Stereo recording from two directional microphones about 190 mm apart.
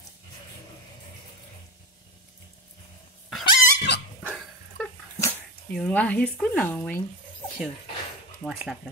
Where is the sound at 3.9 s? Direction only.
60° left (ahead or behind).